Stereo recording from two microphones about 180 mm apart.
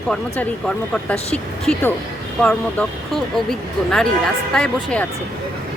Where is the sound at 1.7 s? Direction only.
5° left (ahead or behind).